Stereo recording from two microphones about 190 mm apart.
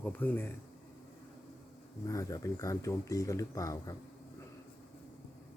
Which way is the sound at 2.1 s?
15° left (ahead or behind).